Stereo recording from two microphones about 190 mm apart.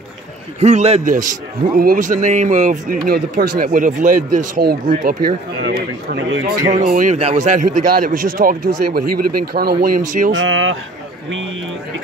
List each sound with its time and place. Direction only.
0.6 s a man's voice: 35° right (ahead or behind)
3.1 s speech: 50° right (ahead or behind)
6.7 s speech: 40° right (ahead or behind)
10.3 s speech: 90° right